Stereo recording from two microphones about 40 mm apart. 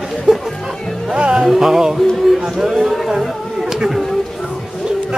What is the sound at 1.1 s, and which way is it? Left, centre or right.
Music, right.